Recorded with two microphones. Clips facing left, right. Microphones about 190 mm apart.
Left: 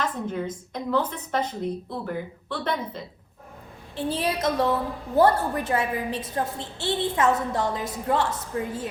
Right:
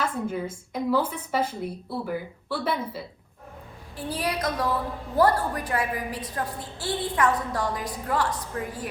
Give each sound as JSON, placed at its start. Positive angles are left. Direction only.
{"t": 0.0, "sound": "a woman's voice", "side_deg": -10}
{"t": 3.9, "sound": "a woman's voice", "side_deg": 25}